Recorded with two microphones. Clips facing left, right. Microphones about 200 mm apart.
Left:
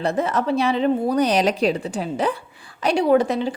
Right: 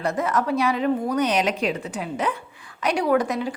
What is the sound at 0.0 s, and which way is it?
A woman's voice, 30° left (ahead or behind).